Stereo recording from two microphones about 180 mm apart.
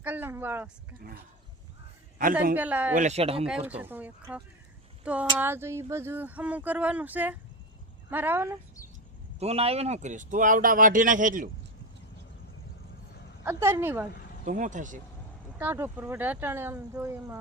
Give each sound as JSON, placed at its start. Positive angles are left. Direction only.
{"t": 0.0, "sound": "speech", "side_deg": -10}
{"t": 2.6, "sound": "speech", "side_deg": -10}
{"t": 2.9, "sound": "speech", "side_deg": -40}
{"t": 3.4, "sound": "speech", "side_deg": -5}
{"t": 9.4, "sound": "speech", "side_deg": -35}
{"t": 13.4, "sound": "speech", "side_deg": -15}
{"t": 14.4, "sound": "speech", "side_deg": -45}
{"t": 15.5, "sound": "speech", "side_deg": -10}